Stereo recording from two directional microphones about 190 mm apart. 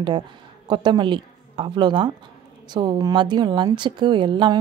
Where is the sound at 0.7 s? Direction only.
25° right (ahead or behind).